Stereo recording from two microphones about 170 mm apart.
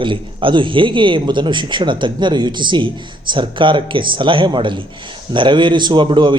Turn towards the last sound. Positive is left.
turn(degrees=-30)  # may be behind; listen again after turning